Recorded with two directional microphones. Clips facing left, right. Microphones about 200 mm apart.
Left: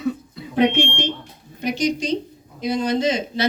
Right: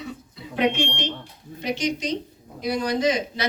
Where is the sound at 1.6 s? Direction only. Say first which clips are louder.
Left 4 dB; 40° left (ahead or behind).